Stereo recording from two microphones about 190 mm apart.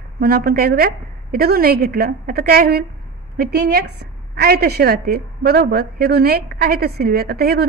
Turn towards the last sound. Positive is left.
turn(degrees=-55)  # may be behind; listen again after turning